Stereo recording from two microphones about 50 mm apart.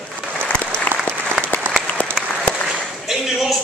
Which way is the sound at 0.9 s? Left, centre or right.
Left.